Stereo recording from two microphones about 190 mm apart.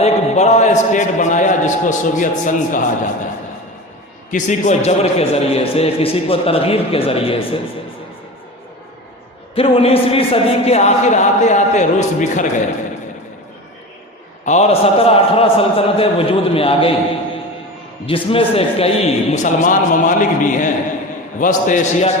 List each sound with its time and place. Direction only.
0.0 s a man's voice: 35° left (ahead or behind)
4.3 s a man's voice: 40° left (ahead or behind)
9.6 s a man's voice: 30° left (ahead or behind)
14.4 s a man's voice: 35° left (ahead or behind)
18.0 s a man's voice: 30° left (ahead or behind)